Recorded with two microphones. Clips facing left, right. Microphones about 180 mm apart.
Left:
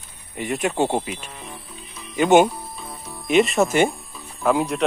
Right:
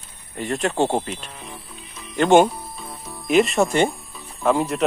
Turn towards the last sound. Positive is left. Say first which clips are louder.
# even
turn(degrees=0)  # may be behind; listen again after turning